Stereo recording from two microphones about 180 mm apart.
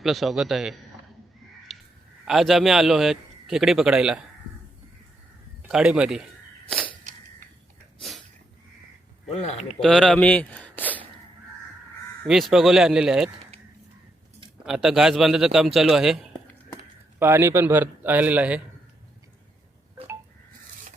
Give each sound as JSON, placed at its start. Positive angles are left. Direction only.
{"t": 0.0, "sound": "a man's voice", "side_deg": 0}
{"t": 1.7, "sound": "a sound", "side_deg": 0}
{"t": 2.2, "sound": "a man's voice", "side_deg": 0}
{"t": 5.6, "sound": "a man's voice", "side_deg": -5}
{"t": 9.3, "sound": "speech", "side_deg": 40}
{"t": 9.8, "sound": "speech", "side_deg": 5}
{"t": 12.3, "sound": "a man's voice", "side_deg": 0}
{"t": 14.6, "sound": "a man's voice", "side_deg": -5}